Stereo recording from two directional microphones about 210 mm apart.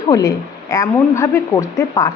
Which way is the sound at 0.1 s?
15° left (ahead or behind).